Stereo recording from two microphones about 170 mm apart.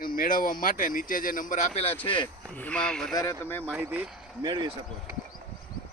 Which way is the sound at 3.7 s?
10° right (ahead or behind).